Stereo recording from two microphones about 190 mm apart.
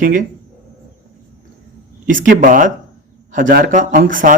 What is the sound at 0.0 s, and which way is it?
Speech, 45° right (ahead or behind).